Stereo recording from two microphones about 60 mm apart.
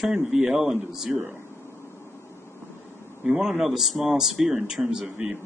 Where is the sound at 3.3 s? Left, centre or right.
Centre.